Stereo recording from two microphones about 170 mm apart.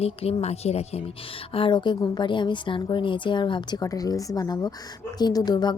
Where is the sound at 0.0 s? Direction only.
35° left (ahead or behind).